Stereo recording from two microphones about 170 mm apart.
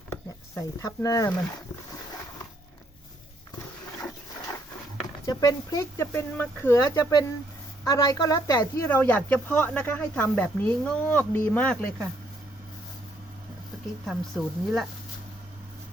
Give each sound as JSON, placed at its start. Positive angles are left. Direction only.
{"t": 0.1, "sound": "a sound", "side_deg": 15}
{"t": 5.2, "sound": "speech", "side_deg": 25}
{"t": 14.0, "sound": "speech", "side_deg": 0}